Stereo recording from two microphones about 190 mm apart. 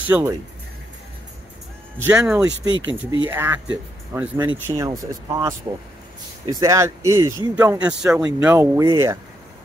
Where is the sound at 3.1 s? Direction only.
15° right (ahead or behind).